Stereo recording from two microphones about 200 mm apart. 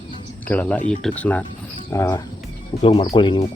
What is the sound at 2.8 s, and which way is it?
Speech, 30° left (ahead or behind).